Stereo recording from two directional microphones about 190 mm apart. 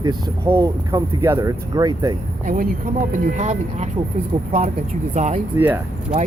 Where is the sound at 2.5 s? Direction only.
45° right (ahead or behind).